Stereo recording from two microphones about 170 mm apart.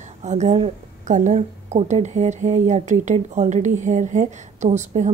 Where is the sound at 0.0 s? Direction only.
40° right (ahead or behind).